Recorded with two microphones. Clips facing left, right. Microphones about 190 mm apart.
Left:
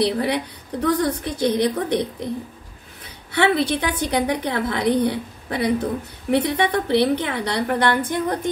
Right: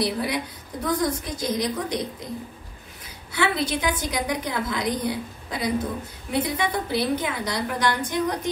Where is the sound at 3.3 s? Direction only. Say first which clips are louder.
Left 6 dB; 65° left (ahead or behind).